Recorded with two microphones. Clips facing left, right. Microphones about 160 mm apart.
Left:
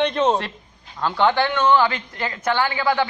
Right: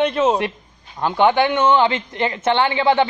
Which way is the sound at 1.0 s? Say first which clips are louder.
Right 3 dB; 15° right (ahead or behind).